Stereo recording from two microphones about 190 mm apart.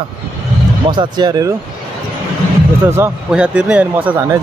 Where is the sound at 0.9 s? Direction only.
25° right (ahead or behind).